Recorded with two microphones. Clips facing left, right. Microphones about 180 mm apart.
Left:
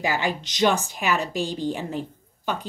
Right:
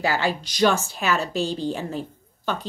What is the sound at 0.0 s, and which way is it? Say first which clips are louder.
A woman's voice: right 2 dB; 15° left (ahead or behind).